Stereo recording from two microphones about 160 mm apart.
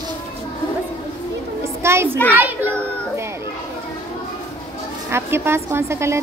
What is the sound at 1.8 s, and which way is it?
Speech, 15° right (ahead or behind).